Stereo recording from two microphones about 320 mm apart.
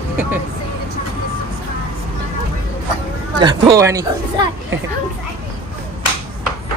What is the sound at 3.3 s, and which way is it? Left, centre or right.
Speech, centre.